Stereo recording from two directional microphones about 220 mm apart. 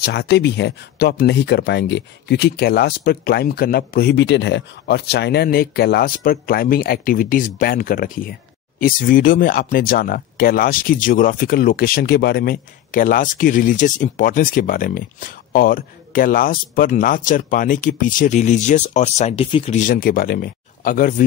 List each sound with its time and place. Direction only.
0.0 s speech: 50° left (ahead or behind)